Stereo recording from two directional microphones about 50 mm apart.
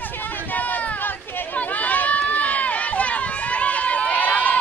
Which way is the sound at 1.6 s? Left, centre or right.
Left.